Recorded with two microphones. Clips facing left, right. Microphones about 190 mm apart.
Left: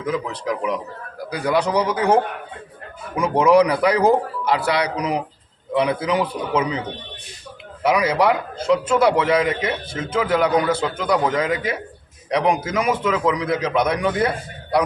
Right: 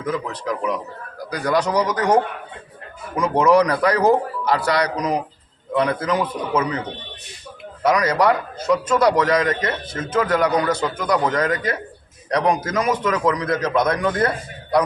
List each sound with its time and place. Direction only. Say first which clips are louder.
0.0 s a man's voice: left 1 dB; 15° left (ahead or behind)